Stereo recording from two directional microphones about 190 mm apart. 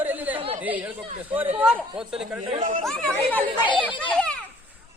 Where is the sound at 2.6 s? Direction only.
40° right (ahead or behind).